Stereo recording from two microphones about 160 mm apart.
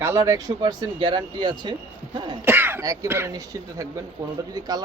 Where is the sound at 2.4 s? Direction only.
10° right (ahead or behind).